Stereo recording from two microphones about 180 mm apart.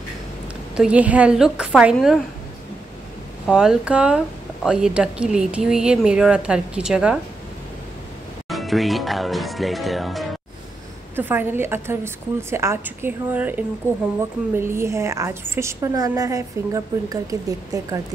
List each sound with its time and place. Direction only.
0.7 s speech: 5° right (ahead or behind)
3.4 s speech: 5° right (ahead or behind)
8.5 s speech: centre (ahead or behind)
11.1 s a woman's voice: 10° right (ahead or behind)